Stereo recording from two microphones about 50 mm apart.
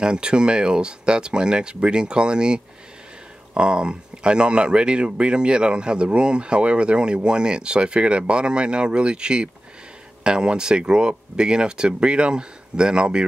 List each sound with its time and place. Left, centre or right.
0.0 s speech: centre